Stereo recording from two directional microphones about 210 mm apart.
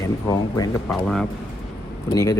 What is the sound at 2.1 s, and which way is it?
Speech, 15° left (ahead or behind).